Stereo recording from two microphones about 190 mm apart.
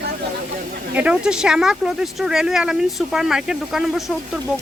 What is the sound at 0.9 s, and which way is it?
Speech, 5° right (ahead or behind).